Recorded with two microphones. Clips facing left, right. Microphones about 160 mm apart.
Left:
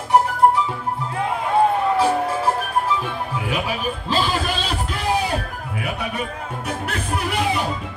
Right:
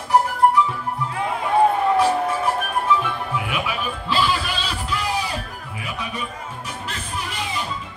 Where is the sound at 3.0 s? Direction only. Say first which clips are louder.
Even; 40° left (ahead or behind).